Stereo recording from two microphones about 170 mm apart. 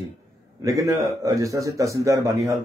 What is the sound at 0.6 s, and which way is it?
Speech, 20° right (ahead or behind).